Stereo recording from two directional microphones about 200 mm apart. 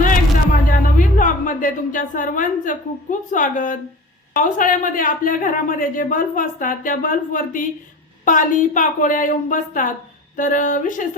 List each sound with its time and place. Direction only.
0.7 s a woman's voice: 40° left (ahead or behind)